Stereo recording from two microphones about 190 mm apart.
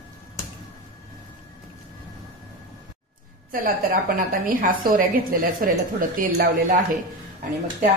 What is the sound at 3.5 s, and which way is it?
A woman's voice, 50° right (ahead or behind).